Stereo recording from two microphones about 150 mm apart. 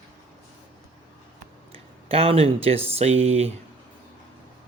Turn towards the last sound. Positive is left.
turn(degrees=-45)  # may be behind; listen again after turning